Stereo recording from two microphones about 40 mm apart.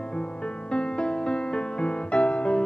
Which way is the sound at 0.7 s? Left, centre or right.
Left.